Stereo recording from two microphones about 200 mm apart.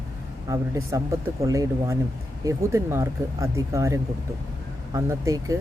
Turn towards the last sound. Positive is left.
turn(degrees=-15)  # may be behind; listen again after turning